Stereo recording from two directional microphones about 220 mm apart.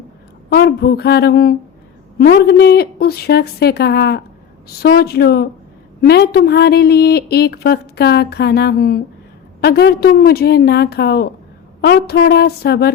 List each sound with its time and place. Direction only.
0.5 s a woman's voice: 45° left (ahead or behind)